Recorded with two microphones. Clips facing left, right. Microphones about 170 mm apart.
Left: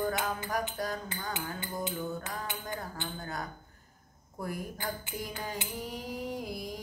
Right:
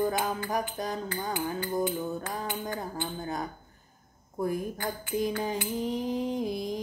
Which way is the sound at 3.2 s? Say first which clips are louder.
Right 5 dB; 20° right (ahead or behind).